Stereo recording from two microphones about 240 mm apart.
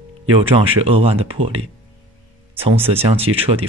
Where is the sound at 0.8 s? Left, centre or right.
Right.